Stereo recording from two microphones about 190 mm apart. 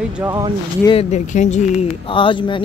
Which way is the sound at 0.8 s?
30° left (ahead or behind).